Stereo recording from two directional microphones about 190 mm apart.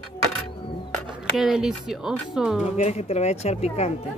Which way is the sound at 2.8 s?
35° left (ahead or behind).